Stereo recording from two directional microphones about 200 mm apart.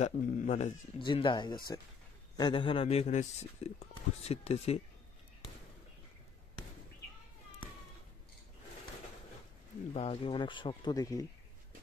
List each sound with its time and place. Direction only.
0.0 s a man's voice: 35° left (ahead or behind)
1.0 s a man's voice: 25° left (ahead or behind)
9.9 s speech: 30° left (ahead or behind)